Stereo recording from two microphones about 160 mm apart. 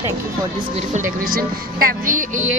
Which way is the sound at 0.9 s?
65° right (ahead or behind).